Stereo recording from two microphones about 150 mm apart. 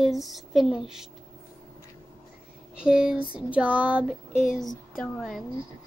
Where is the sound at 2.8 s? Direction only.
5° right (ahead or behind).